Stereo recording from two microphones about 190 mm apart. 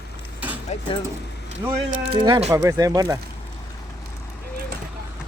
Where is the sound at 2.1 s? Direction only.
30° right (ahead or behind).